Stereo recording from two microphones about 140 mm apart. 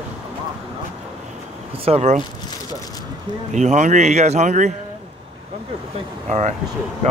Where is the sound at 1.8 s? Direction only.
50° right (ahead or behind).